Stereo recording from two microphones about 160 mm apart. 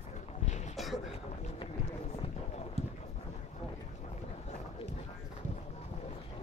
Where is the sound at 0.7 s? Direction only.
Centre (ahead or behind).